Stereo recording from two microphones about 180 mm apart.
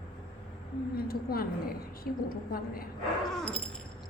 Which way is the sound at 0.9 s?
55° left (ahead or behind).